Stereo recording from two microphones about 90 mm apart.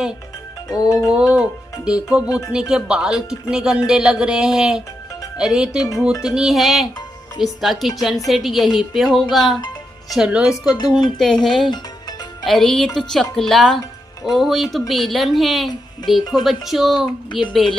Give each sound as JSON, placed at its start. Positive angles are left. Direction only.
{"t": 0.7, "sound": "music", "side_deg": 40}
{"t": 1.1, "sound": "a woman's voice", "side_deg": -10}
{"t": 10.9, "sound": "a woman's voice", "side_deg": 0}
{"t": 17.3, "sound": "a woman's voice", "side_deg": 65}